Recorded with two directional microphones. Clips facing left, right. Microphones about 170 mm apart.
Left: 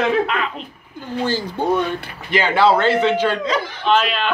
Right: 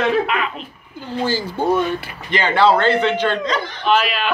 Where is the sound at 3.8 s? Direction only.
5° right (ahead or behind).